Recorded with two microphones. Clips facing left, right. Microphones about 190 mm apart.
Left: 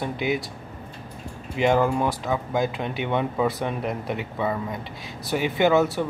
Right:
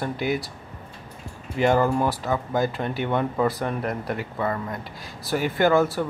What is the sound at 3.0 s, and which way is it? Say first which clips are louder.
Speech: even; 15° left (ahead or behind).